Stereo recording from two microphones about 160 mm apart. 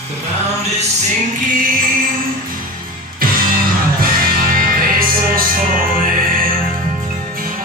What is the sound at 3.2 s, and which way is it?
Music, 65° right (ahead or behind).